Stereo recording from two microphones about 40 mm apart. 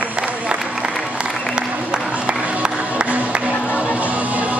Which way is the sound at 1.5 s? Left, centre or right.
Right.